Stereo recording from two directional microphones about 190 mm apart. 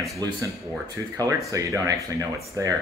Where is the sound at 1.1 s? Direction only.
20° right (ahead or behind).